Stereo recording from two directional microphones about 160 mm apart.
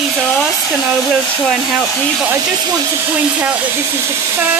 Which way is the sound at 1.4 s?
Centre (ahead or behind).